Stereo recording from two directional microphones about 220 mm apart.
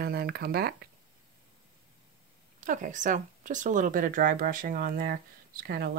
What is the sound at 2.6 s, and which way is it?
Speech, 35° right (ahead or behind).